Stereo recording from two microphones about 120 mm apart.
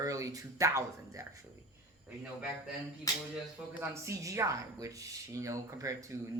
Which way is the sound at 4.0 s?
25° right (ahead or behind).